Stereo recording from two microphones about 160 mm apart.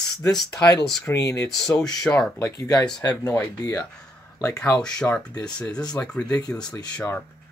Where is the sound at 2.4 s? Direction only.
20° left (ahead or behind).